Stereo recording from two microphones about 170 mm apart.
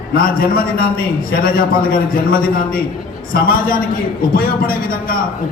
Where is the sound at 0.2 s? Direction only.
60° left (ahead or behind).